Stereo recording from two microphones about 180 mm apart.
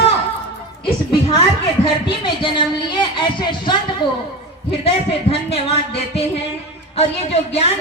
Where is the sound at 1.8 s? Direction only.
25° left (ahead or behind).